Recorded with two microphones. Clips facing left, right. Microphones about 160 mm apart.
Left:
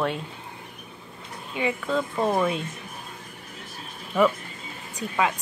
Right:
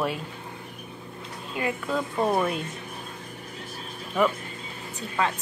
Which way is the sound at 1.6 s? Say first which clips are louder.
Left 2 dB; 5° right (ahead or behind).